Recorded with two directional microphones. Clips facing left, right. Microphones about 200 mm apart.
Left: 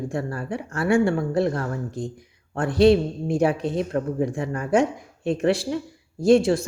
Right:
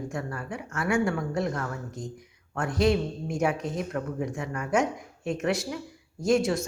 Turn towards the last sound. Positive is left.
turn(degrees=30)  # may be behind; listen again after turning